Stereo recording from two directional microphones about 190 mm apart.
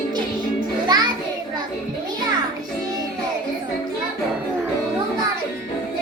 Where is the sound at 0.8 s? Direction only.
20° right (ahead or behind).